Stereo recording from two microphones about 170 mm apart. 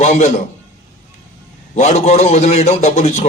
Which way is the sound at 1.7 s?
40° left (ahead or behind).